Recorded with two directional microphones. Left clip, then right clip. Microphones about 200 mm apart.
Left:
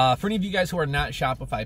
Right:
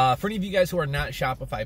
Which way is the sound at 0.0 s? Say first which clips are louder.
Left 1 dB; 15° left (ahead or behind).